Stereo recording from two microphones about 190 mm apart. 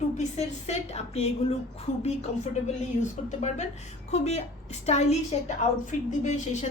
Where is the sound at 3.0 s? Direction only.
35° left (ahead or behind).